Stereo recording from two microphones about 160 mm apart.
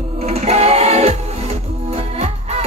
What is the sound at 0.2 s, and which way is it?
Music, 40° right (ahead or behind).